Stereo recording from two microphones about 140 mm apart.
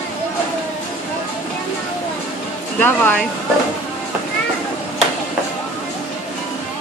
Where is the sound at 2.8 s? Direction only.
10° left (ahead or behind).